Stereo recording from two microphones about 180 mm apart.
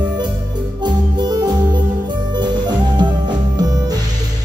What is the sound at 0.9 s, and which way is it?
Music, 25° right (ahead or behind).